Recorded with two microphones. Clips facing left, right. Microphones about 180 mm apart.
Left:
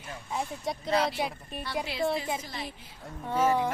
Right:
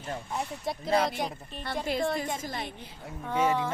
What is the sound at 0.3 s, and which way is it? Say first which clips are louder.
A woman's voice: left 3 dB; centre (ahead or behind).